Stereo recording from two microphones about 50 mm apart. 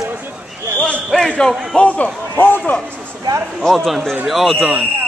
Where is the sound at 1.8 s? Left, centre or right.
Left.